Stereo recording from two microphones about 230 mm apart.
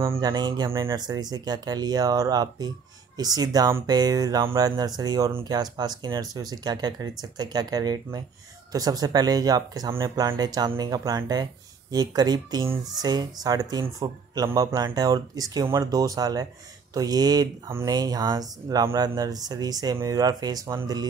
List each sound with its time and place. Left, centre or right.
0.0 s speech: centre